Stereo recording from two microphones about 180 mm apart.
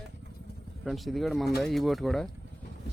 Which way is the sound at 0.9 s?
Centre (ahead or behind).